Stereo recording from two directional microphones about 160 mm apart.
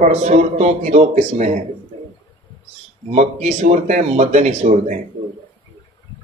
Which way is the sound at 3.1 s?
45° right (ahead or behind).